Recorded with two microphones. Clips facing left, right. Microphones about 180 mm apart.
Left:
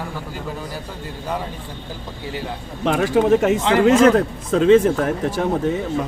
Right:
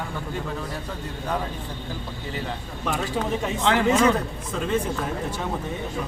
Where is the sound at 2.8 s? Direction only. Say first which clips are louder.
Left 10 dB; 75° left (ahead or behind).